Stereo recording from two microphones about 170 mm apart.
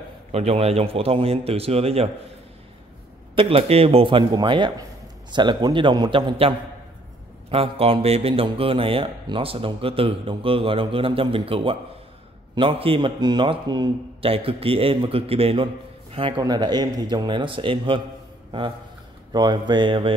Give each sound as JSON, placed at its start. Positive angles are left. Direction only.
{"t": 0.3, "sound": "a man's voice", "side_deg": -35}
{"t": 3.3, "sound": "a man's voice", "side_deg": -35}
{"t": 7.5, "sound": "a man's voice", "side_deg": -35}
{"t": 19.3, "sound": "a man's voice", "side_deg": -25}